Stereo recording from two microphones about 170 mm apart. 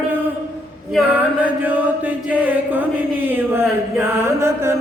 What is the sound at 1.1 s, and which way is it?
Mantra, 10° right (ahead or behind).